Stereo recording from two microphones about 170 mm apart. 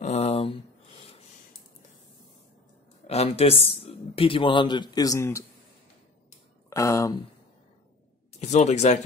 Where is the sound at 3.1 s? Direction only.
35° left (ahead or behind); by 5.4 s 20° left (ahead or behind).